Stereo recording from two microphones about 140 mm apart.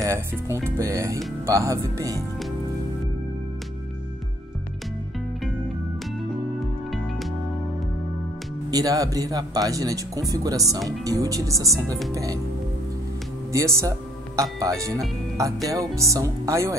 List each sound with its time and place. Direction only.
0.0 s speech: 20° right (ahead or behind)
8.6 s speech: 25° right (ahead or behind)
13.5 s speech: 20° right (ahead or behind)